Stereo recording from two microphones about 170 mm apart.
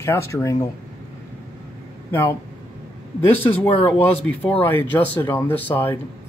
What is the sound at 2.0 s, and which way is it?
Speech, 15° left (ahead or behind).